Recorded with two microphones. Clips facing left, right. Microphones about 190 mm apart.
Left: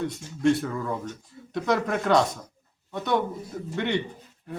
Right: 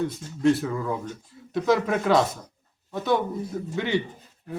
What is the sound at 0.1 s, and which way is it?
A man's voice, centre (ahead or behind).